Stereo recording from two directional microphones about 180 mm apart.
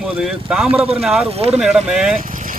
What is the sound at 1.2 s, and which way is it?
Speech, 35° right (ahead or behind).